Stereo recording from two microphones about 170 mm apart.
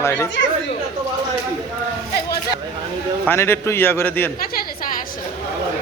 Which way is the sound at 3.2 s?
15° left (ahead or behind).